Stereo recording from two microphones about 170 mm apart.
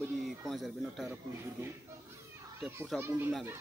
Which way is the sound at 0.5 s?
Centre (ahead or behind).